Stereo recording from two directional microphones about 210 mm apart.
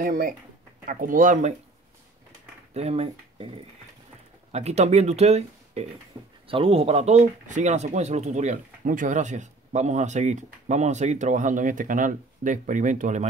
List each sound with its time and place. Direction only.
0.0 s speech: 45° right (ahead or behind)
2.7 s speech: 30° right (ahead or behind)
4.5 s speech: 30° right (ahead or behind)